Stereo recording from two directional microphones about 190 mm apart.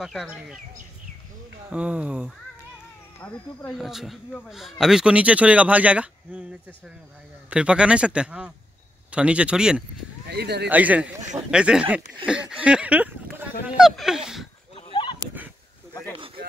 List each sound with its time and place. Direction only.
0.0 s speech: centre (ahead or behind)
1.7 s speech: 5° right (ahead or behind)
7.4 s speech: 5° right (ahead or behind)
10.3 s speech: 60° right (ahead or behind)
10.7 s speech: 10° right (ahead or behind)
14.9 s a sound: 25° left (ahead or behind)
15.1 s fowl: 10° right (ahead or behind)